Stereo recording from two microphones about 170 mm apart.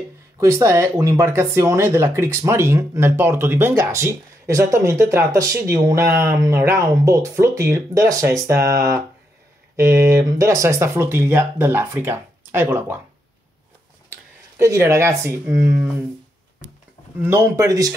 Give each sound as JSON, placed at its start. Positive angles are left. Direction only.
{"t": 0.4, "sound": "speech", "side_deg": -15}
{"t": 14.1, "sound": "speech", "side_deg": -15}
{"t": 17.2, "sound": "speech", "side_deg": -15}